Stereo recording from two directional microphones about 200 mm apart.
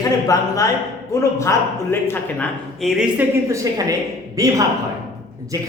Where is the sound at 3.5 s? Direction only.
15° right (ahead or behind).